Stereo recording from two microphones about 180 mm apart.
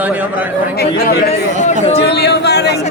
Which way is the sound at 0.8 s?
60° left (ahead or behind).